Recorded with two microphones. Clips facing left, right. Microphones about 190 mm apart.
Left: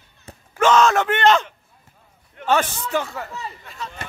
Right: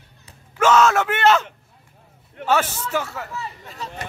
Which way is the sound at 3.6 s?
35° right (ahead or behind).